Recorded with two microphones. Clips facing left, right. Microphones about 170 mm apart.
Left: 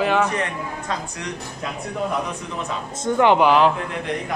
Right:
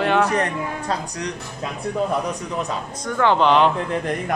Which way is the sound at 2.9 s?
25° left (ahead or behind).